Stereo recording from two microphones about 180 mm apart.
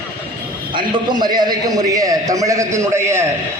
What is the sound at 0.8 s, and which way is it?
A man's voice, 25° right (ahead or behind).